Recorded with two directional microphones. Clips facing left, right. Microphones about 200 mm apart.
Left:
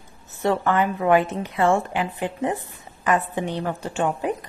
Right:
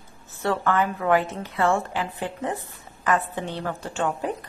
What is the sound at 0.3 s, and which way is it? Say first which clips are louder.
A woman's voice: left 3 dB; 20° left (ahead or behind).